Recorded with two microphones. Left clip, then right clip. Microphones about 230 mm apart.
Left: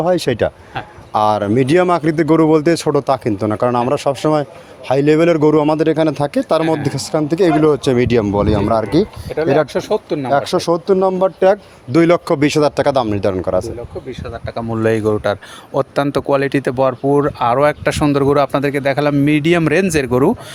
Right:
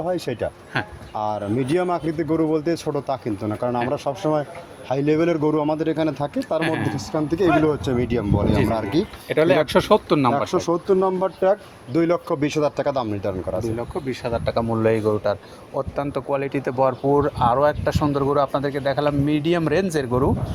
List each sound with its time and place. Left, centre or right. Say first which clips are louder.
0.0 s a man's voice: left 9 dB; left
9.3 s speech: left 1 dB; centre
10.3 s speech: left 6 dB; left
14.3 s speech: right 3 dB; centre
14.6 s a man's voice: left 6 dB; left